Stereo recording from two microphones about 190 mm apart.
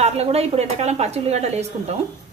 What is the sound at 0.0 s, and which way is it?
Speech, 35° right (ahead or behind).